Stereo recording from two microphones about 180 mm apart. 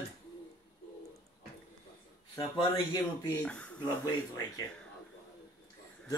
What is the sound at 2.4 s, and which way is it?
Speech, 25° left (ahead or behind).